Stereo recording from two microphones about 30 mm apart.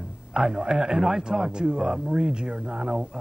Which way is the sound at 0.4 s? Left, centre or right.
Centre.